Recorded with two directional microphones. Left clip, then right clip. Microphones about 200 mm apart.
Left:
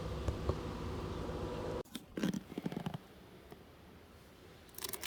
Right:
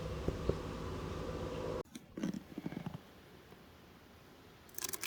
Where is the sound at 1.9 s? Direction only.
55° left (ahead or behind).